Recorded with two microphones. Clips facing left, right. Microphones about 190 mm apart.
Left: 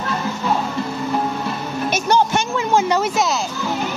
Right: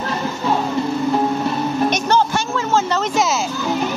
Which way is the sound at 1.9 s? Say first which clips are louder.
Even; 10° left (ahead or behind).